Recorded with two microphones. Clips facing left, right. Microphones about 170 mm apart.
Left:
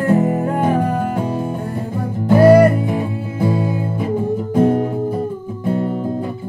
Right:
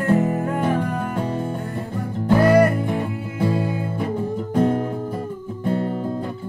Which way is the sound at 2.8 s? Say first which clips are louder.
Left 3 dB; 10° left (ahead or behind).